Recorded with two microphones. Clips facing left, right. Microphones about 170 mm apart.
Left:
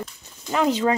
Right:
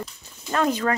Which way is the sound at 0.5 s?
20° left (ahead or behind).